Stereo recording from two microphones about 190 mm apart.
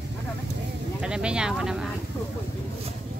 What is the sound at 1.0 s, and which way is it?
Speech, 5° right (ahead or behind).